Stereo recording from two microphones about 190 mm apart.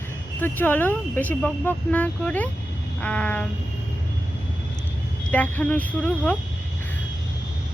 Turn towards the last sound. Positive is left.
turn(degrees=10)  # may be behind; listen again after turning